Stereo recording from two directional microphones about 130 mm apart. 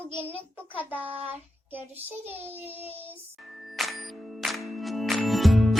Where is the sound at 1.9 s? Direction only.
15° right (ahead or behind).